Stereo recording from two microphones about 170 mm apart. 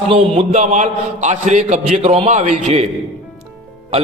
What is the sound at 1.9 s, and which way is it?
Speech, 35° right (ahead or behind).